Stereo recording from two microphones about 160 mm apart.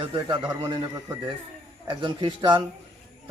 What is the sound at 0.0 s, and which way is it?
A man's voice, 30° right (ahead or behind).